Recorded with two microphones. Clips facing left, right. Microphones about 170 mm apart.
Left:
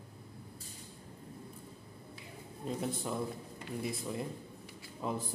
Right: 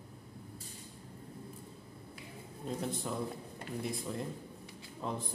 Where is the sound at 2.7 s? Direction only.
Centre (ahead or behind).